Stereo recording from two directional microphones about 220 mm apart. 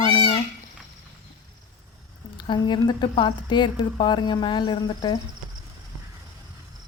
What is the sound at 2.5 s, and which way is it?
A woman's voice, 20° left (ahead or behind).